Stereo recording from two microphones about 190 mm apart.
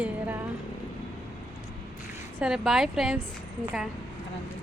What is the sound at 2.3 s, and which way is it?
Speech, 5° right (ahead or behind).